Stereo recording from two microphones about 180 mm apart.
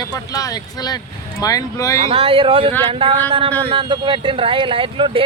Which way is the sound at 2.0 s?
30° right (ahead or behind).